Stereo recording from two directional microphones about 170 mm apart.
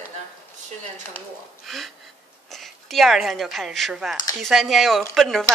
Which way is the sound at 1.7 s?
Centre (ahead or behind).